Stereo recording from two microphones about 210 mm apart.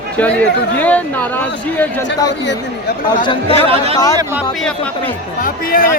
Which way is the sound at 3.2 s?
20° left (ahead or behind).